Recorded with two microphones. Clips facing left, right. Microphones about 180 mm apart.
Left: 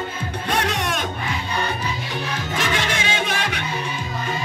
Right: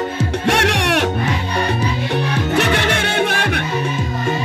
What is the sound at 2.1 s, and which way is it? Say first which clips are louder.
Music: right 8 dB; 65° right (ahead or behind).